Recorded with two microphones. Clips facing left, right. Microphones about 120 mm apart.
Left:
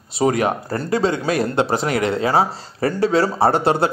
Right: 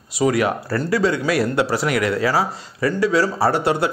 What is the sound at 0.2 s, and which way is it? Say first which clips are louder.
Speech: even; 30° left (ahead or behind).